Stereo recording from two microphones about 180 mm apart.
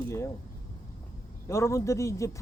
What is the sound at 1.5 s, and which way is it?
Speech, 15° left (ahead or behind).